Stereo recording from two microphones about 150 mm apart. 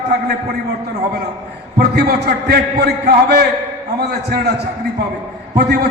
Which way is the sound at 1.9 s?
90° right.